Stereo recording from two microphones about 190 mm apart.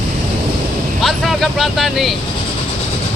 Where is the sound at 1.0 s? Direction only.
Centre (ahead or behind).